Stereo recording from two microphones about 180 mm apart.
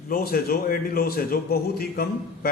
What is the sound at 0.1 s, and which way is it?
A man's voice, 55° left (ahead or behind).